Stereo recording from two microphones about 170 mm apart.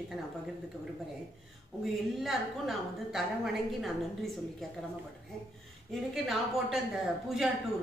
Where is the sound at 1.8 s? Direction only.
Centre (ahead or behind).